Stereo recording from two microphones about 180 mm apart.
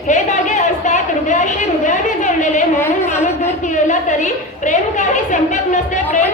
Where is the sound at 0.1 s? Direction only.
45° left (ahead or behind).